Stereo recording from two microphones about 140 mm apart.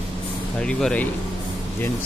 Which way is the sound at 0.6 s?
5° left (ahead or behind).